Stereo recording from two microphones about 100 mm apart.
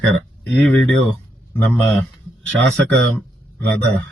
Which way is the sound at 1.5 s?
20° left (ahead or behind).